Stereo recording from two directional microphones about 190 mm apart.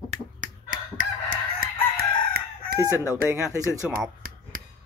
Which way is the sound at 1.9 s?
55° right (ahead or behind).